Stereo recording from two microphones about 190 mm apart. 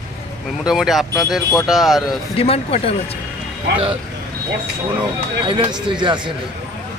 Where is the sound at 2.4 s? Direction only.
30° left (ahead or behind).